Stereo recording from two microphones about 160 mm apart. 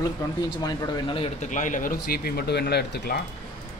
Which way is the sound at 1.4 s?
50° left (ahead or behind).